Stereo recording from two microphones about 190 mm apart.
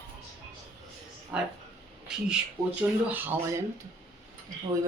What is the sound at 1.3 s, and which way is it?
Speech, 5° right (ahead or behind).